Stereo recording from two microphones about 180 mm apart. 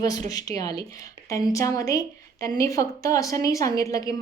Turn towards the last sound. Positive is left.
turn(degrees=20)  # may be behind; listen again after turning